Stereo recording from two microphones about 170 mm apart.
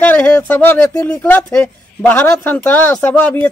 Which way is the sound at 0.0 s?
10° left (ahead or behind).